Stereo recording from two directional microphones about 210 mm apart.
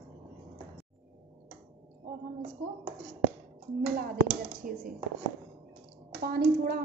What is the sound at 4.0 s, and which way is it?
Speech, 40° right (ahead or behind).